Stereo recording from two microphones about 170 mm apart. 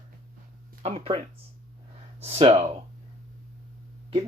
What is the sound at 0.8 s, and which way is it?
Speech, 35° right (ahead or behind).